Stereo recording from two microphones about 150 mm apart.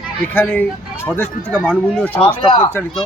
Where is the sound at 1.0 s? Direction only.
15° left (ahead or behind).